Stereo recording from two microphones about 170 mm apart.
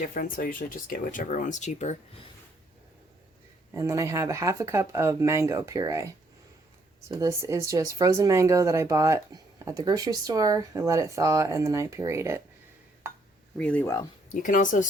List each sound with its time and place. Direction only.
0.0 s speech: 55° left (ahead or behind)
3.8 s speech: 20° right (ahead or behind)
7.1 s speech: 20° right (ahead or behind)
13.6 s speech: 10° left (ahead or behind)
14.4 s speech: 50° left (ahead or behind)